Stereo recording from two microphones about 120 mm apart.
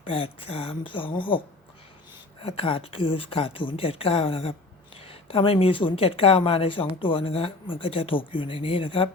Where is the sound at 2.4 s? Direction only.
50° left (ahead or behind).